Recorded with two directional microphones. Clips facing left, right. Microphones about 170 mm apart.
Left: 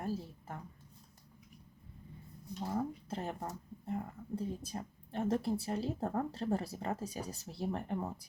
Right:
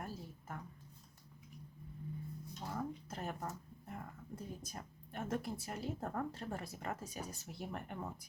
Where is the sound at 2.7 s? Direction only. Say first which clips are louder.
Left 5 dB; 30° left (ahead or behind).